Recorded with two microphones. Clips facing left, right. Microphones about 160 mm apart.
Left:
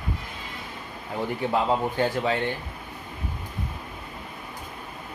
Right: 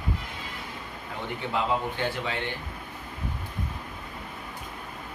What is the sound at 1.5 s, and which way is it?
Speech, 40° left (ahead or behind).